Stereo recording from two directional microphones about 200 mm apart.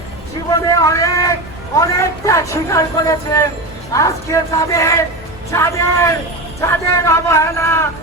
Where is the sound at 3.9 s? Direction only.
15° left (ahead or behind).